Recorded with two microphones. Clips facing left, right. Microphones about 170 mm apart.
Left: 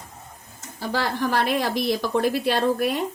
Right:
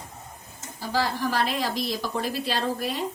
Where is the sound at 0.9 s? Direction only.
60° left (ahead or behind).